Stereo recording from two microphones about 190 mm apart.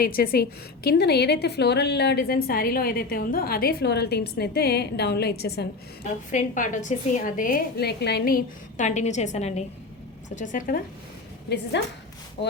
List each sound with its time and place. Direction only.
0.0 s a woman's voice: 50° left (ahead or behind)
6.3 s a woman's voice: 40° left (ahead or behind)
11.4 s a woman's voice: 65° left (ahead or behind)